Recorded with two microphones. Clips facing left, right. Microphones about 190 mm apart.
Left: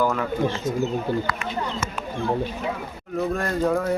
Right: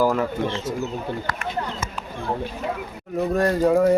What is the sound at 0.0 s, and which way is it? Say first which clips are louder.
Speech: right 3 dB; 30° right (ahead or behind).